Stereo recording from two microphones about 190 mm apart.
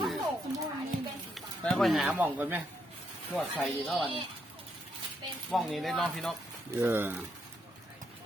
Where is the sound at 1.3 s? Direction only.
Centre (ahead or behind).